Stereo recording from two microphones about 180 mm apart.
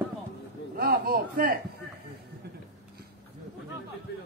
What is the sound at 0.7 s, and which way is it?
Speech, 55° right (ahead or behind).